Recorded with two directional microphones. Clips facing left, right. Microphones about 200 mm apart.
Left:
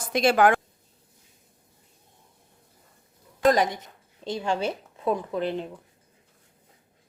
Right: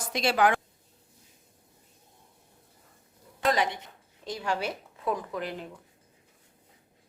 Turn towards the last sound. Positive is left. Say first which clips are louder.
# left 6 dB
turn(degrees=25)  # may be behind; listen again after turning